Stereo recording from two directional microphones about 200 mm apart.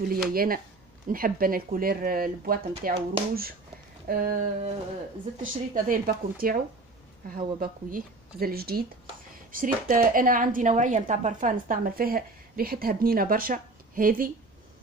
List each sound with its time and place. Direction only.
0.3 s speech: 45° right (ahead or behind)